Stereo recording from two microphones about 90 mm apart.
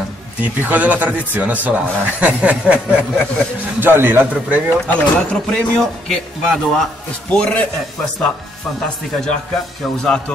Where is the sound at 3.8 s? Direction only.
25° right (ahead or behind).